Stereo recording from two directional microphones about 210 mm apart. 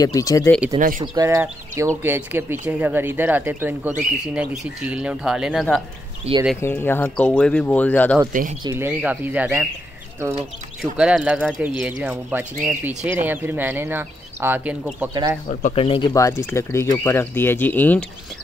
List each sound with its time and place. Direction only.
0.0 s speech: 15° left (ahead or behind)
0.7 s speech: 40° right (ahead or behind)
1.0 s speech: 15° right (ahead or behind); by 5.8 s centre (ahead or behind)
6.3 s speech: 30° right (ahead or behind)
6.6 s speech: 10° left (ahead or behind)
8.3 s speech: 40° right (ahead or behind)
8.6 s speech: 10° right (ahead or behind)
10.8 s speech: 5° right (ahead or behind)
15.6 s speech: 25° left (ahead or behind); by 18.0 s 10° left (ahead or behind)